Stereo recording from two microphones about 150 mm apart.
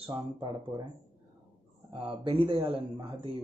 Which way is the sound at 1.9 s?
35° right (ahead or behind).